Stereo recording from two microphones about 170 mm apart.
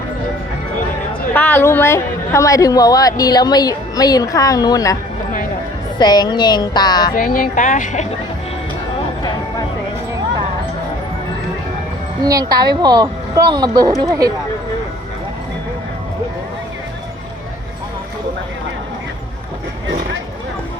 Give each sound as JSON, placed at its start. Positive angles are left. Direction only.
{"t": 1.3, "sound": "a woman's voice", "side_deg": 10}
{"t": 6.0, "sound": "a woman's voice", "side_deg": 25}
{"t": 7.2, "sound": "speech", "side_deg": 55}
{"t": 12.2, "sound": "speech", "side_deg": -20}